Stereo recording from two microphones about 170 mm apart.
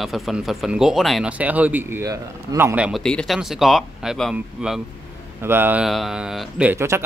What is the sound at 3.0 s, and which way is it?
Speech, 5° left (ahead or behind).